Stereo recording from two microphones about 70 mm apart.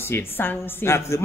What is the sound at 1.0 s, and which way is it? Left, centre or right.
Speech, left.